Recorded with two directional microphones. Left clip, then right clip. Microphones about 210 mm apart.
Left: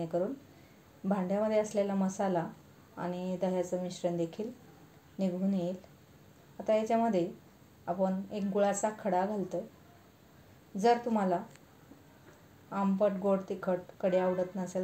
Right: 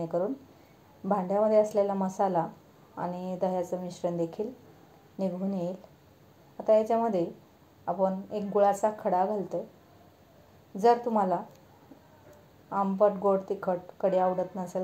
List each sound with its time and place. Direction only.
0.1 s speech: 15° right (ahead or behind)
10.8 s speech: 15° right (ahead or behind)
12.6 s speech: 10° right (ahead or behind)